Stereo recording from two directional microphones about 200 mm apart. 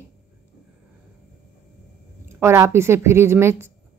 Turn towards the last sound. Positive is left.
turn(degrees=-15)  # may be behind; listen again after turning